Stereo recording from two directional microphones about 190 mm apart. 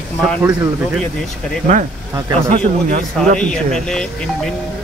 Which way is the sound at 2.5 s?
40° right (ahead or behind).